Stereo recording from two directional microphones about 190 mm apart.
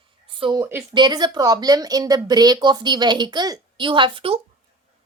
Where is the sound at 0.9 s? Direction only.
20° right (ahead or behind).